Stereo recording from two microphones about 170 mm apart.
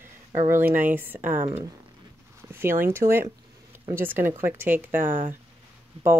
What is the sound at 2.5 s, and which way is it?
Speech, 15° right (ahead or behind).